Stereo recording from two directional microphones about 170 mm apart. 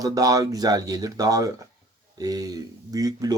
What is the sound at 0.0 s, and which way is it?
Speech, 20° right (ahead or behind).